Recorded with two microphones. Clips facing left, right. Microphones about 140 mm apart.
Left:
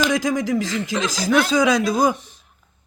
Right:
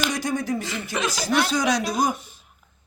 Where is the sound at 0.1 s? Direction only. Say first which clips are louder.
Left 5 dB; 90° left.